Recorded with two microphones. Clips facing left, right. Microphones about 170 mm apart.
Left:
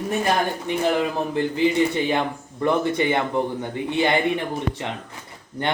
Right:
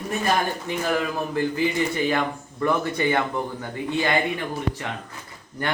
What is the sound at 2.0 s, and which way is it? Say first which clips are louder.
Speech: left 1 dB; 20° left (ahead or behind).